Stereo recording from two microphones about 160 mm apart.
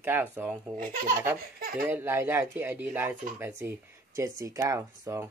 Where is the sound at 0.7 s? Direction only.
60° right (ahead or behind).